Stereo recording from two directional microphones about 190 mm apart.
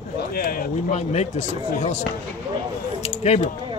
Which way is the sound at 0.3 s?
50° left (ahead or behind).